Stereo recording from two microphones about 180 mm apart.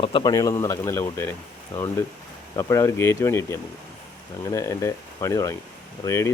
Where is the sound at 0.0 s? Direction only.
25° left (ahead or behind).